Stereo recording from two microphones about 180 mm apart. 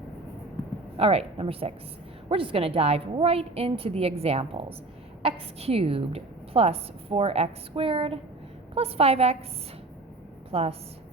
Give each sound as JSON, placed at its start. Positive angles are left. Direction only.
{"t": 0.9, "sound": "a woman's voice", "side_deg": -35}
{"t": 10.5, "sound": "a woman's voice", "side_deg": -35}